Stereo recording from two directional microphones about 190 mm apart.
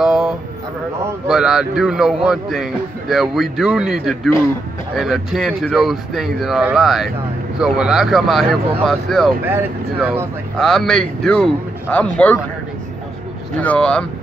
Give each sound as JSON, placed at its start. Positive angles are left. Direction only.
{"t": 0.0, "sound": "a sound", "side_deg": -5}
{"t": 1.2, "sound": "a man's voice", "side_deg": -5}
{"t": 9.4, "sound": "a man's voice", "side_deg": -10}
{"t": 13.6, "sound": "a man's voice", "side_deg": 5}